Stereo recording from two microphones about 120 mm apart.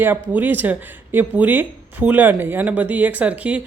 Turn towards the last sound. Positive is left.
turn(degrees=-10)  # may be behind; listen again after turning